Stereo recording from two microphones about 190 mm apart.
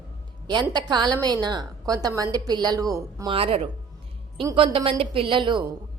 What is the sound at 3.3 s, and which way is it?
A woman's voice, 30° right (ahead or behind).